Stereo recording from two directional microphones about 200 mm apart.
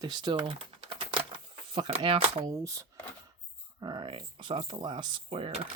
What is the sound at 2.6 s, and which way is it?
Speech, 15° right (ahead or behind).